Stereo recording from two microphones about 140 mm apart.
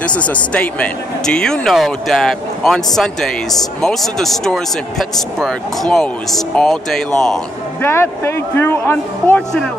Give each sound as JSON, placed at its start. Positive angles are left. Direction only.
{"t": 0.0, "sound": "speech", "side_deg": 10}
{"t": 7.8, "sound": "speech", "side_deg": 20}